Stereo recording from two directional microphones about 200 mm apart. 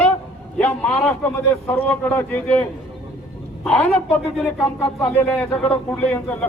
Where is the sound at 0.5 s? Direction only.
5° left (ahead or behind).